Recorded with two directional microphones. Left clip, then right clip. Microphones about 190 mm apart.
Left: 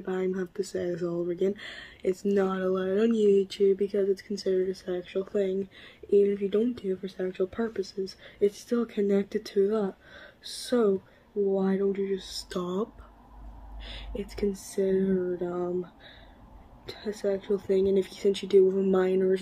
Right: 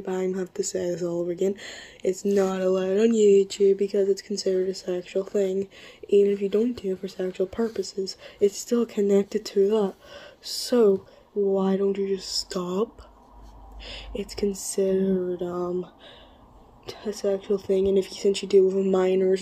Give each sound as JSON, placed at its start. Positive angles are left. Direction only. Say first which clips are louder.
{"t": 0.0, "sound": "speech", "louder": "right 3 dB", "side_deg": -15}
{"t": 13.8, "sound": "speech", "louder": "right 4 dB", "side_deg": -20}